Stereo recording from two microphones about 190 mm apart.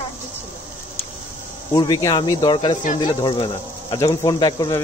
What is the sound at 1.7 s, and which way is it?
Speech, 20° left (ahead or behind).